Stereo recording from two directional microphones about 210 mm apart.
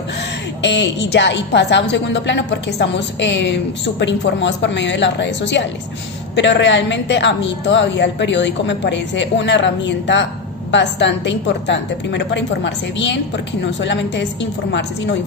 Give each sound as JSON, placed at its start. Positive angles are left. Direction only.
{"t": 0.6, "sound": "a woman's voice", "side_deg": 55}